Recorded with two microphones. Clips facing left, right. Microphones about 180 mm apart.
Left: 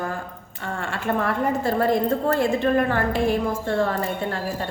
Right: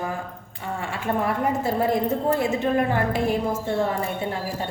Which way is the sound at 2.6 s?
20° right (ahead or behind).